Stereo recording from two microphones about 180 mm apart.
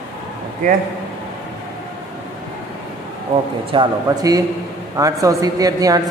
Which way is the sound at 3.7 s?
25° right (ahead or behind).